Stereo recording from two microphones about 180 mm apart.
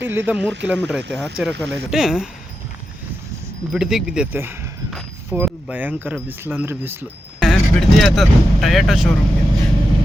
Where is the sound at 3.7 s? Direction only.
5° right (ahead or behind).